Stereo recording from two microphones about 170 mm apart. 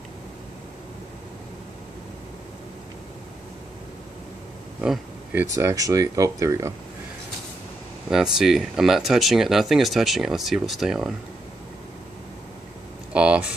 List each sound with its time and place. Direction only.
4.8 s speech: 5° right (ahead or behind)
8.1 s speech: 5° right (ahead or behind)
13.1 s speech: 5° right (ahead or behind)